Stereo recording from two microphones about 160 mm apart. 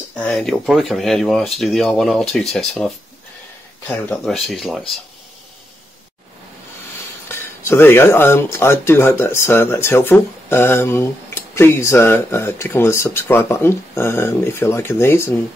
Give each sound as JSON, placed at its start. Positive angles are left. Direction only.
{"t": 0.2, "sound": "speech", "side_deg": 5}
{"t": 3.9, "sound": "speech", "side_deg": 5}
{"t": 7.2, "sound": "speech", "side_deg": 15}